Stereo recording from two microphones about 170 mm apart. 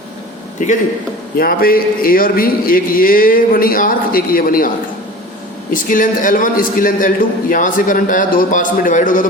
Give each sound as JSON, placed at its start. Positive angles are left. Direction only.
{"t": 0.6, "sound": "a man's voice", "side_deg": 45}
{"t": 1.4, "sound": "speech", "side_deg": 60}
{"t": 5.7, "sound": "a man's voice", "side_deg": 50}